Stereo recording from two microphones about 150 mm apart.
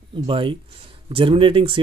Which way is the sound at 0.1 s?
35° right (ahead or behind).